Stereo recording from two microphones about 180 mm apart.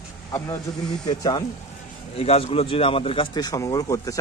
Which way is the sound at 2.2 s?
35° left (ahead or behind).